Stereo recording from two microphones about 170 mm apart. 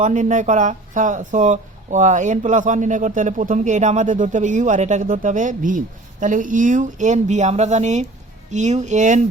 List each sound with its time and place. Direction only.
0.0 s speech: 45° right (ahead or behind)